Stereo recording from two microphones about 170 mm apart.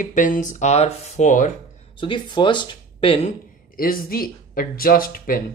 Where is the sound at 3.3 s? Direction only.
55° left (ahead or behind).